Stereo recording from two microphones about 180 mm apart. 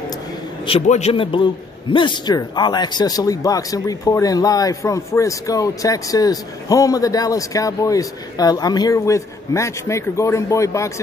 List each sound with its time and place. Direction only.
0.7 s a man's voice: 35° left (ahead or behind); by 10.9 s 15° left (ahead or behind)